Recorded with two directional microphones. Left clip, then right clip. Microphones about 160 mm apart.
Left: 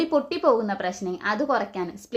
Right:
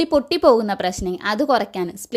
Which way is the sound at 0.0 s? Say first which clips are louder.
Right 6 dB; 60° right (ahead or behind).